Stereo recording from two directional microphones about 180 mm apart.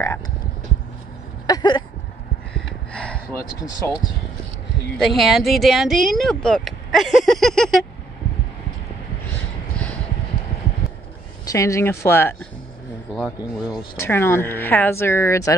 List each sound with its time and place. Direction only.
1.5 s a sound: 25° left (ahead or behind)
2.5 s gasp: 5° left (ahead or behind)
3.3 s speech: 20° left (ahead or behind)
5.0 s speech: centre (ahead or behind)
11.4 s speech: 15° left (ahead or behind)
13.7 s speech: 15° left (ahead or behind)